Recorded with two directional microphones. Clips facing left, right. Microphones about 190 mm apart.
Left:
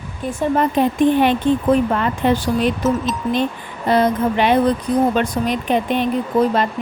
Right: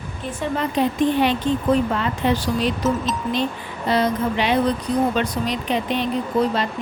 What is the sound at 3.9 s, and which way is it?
Speech, 50° left (ahead or behind).